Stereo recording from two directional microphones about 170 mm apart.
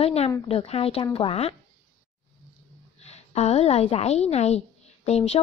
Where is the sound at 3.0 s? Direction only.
40° left (ahead or behind).